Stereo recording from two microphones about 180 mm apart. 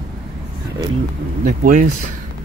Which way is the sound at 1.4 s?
45° right (ahead or behind).